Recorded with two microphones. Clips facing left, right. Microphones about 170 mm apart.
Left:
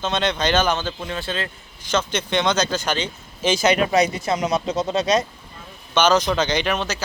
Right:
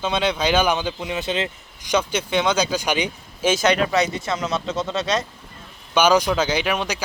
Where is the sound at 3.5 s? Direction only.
Centre (ahead or behind).